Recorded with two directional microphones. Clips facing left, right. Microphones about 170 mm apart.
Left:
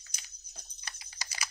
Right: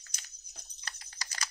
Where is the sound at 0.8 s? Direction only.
10° left (ahead or behind).